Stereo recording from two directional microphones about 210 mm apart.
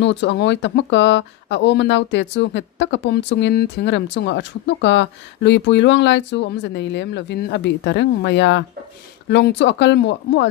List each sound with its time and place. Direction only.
0.0 s speech: 55° left (ahead or behind)